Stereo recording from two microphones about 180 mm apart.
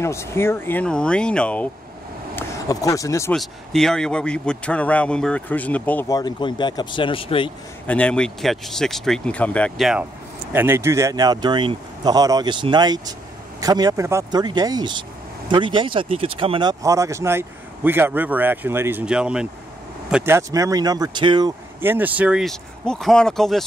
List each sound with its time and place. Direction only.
0.0 s a man's voice: 15° left (ahead or behind)
2.3 s speech: 20° left (ahead or behind)
3.3 s a man's voice: centre (ahead or behind)
6.1 s speech: 25° left (ahead or behind)
7.8 s speech: 5° left (ahead or behind)
10.5 s speech: 10° right (ahead or behind)
21.8 s speech: 10° right (ahead or behind)